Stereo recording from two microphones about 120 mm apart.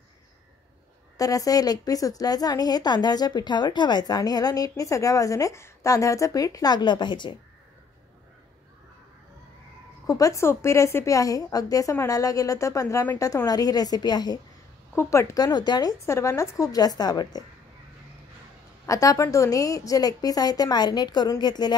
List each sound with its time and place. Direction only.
1.1 s a woman's voice: 30° left (ahead or behind)
10.0 s a woman's voice: 30° left (ahead or behind)
15.0 s a woman's voice: 25° left (ahead or behind)
18.9 s a woman's voice: 25° left (ahead or behind)